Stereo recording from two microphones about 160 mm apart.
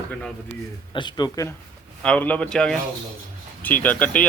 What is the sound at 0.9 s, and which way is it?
Speech, 30° left (ahead or behind).